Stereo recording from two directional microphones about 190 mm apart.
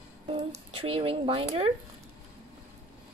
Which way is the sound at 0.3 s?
25° right (ahead or behind).